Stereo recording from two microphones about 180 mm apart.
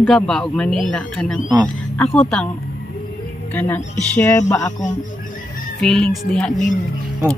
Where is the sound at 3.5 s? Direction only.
10° left (ahead or behind).